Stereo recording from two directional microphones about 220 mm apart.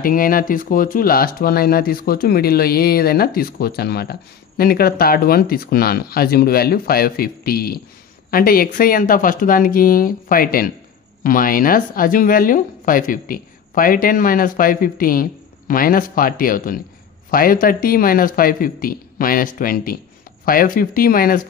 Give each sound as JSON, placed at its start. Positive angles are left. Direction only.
{"t": 0.0, "sound": "a woman's voice", "side_deg": 40}